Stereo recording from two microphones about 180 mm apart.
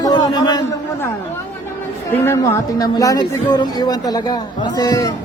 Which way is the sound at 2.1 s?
15° left (ahead or behind).